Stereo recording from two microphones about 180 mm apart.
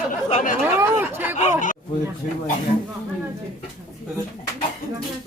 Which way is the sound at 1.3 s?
45° left (ahead or behind).